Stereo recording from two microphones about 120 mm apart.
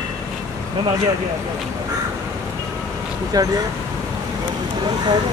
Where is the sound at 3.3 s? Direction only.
30° right (ahead or behind).